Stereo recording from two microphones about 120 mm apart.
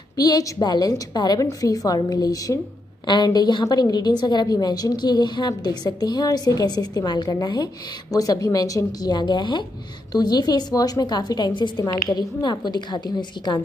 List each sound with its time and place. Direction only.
0.2 s a woman's voice: 30° left (ahead or behind)